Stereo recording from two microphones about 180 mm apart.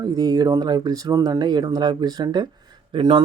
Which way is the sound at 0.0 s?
20° right (ahead or behind).